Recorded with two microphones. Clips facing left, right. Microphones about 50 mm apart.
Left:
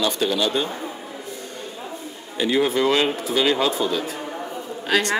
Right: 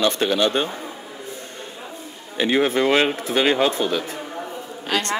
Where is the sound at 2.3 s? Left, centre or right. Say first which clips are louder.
Right 1 dB; right.